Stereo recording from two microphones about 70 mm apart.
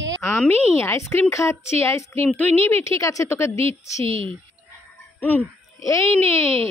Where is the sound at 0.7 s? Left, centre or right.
Left.